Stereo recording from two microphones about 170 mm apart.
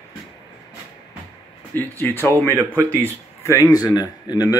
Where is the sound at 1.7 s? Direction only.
10° left (ahead or behind).